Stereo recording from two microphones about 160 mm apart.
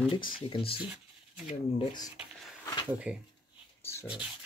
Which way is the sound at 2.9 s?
5° right (ahead or behind).